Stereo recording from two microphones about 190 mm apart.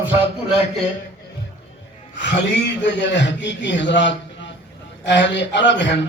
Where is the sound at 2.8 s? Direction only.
65° left (ahead or behind).